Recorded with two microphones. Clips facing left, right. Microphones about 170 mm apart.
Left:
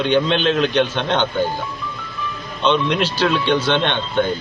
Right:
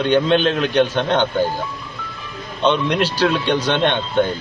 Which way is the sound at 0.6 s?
10° right (ahead or behind).